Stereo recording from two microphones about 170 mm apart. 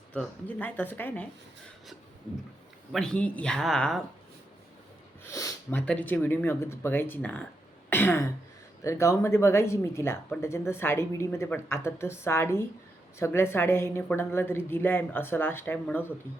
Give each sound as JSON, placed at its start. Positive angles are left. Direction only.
{"t": 0.1, "sound": "speech", "side_deg": 10}
{"t": 2.9, "sound": "speech", "side_deg": 5}
{"t": 5.2, "sound": "a sound", "side_deg": 20}
{"t": 5.8, "sound": "speech", "side_deg": 10}
{"t": 7.9, "sound": "throat clearing", "side_deg": 10}
{"t": 8.8, "sound": "speech", "side_deg": 15}